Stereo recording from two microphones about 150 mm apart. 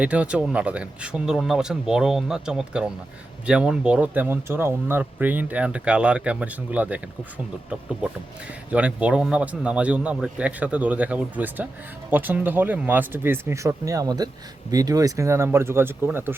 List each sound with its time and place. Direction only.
0.0 s speech: 10° right (ahead or behind)
8.7 s speech: 10° right (ahead or behind)